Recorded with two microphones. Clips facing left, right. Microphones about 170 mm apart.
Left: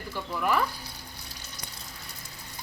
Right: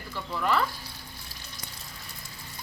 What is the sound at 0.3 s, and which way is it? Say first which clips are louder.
Speech: even; 10° left (ahead or behind).